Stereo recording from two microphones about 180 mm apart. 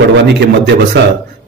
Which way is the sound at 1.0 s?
70° right (ahead or behind).